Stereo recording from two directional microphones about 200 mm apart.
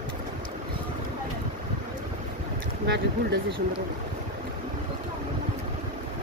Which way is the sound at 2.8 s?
55° right (ahead or behind).